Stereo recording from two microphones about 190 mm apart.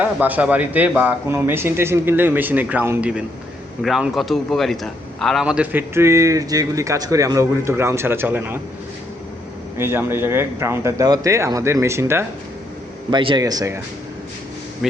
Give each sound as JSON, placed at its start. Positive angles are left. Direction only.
{"t": 0.0, "sound": "a man's voice", "side_deg": -10}
{"t": 9.7, "sound": "a man's voice", "side_deg": -10}
{"t": 13.1, "sound": "speech", "side_deg": -25}